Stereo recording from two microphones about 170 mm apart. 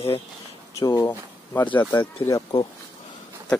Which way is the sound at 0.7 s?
20° left (ahead or behind).